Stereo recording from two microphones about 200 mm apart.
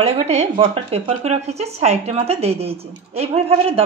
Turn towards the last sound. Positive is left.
turn(degrees=-30)  # may be behind; listen again after turning